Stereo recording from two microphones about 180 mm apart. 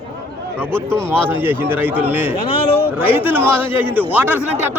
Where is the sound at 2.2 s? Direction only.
30° left (ahead or behind).